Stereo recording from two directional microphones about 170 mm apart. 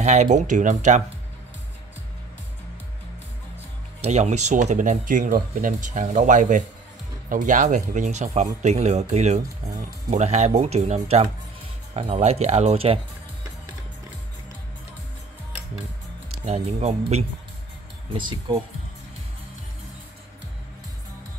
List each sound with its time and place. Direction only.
0.0 s speech: 45° right (ahead or behind)
4.0 s speech: 40° right (ahead or behind)
16.4 s speech: 40° right (ahead or behind)